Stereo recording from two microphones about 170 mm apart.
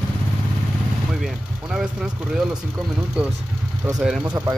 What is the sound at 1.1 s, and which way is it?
Speech, centre (ahead or behind).